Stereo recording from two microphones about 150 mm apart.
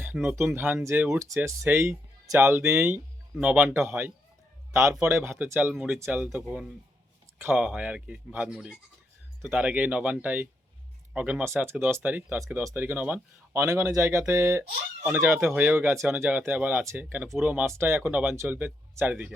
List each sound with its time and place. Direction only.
0.0 s speech: 15° right (ahead or behind)